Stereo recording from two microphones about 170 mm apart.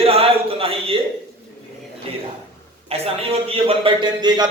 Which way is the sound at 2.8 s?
35° right (ahead or behind).